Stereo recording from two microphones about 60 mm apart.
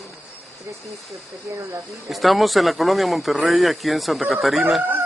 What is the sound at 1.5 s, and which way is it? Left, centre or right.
Speech, right.